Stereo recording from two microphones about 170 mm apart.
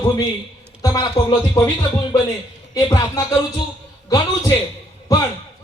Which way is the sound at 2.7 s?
20° left (ahead or behind).